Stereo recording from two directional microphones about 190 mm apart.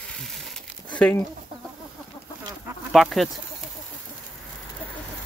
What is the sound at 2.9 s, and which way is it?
Speech, centre (ahead or behind).